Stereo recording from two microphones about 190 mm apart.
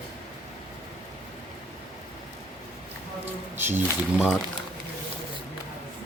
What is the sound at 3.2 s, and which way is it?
Squish, 10° right (ahead or behind).